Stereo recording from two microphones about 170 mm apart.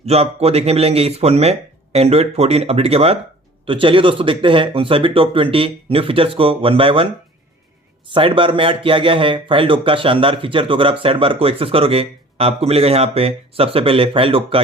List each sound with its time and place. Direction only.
0.0 s speech: 40° right (ahead or behind)
8.1 s speech: 30° right (ahead or behind)